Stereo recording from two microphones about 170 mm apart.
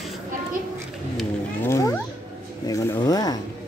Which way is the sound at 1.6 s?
20° left (ahead or behind).